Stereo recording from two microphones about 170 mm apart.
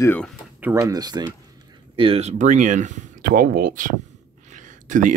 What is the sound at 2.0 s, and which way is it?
Speech, 35° right (ahead or behind).